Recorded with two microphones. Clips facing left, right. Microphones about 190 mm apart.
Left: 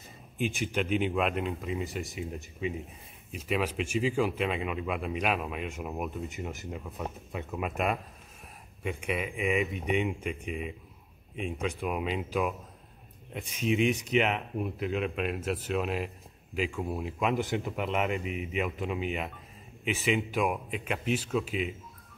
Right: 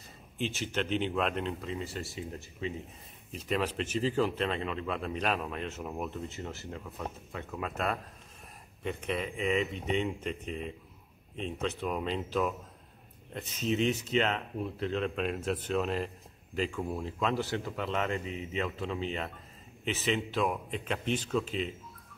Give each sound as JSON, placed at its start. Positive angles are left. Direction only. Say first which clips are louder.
{"t": 0.4, "sound": "speech", "louder": "left 3 dB", "side_deg": 15}